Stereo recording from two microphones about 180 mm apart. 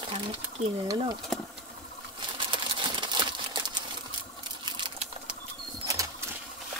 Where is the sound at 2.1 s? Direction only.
25° right (ahead or behind).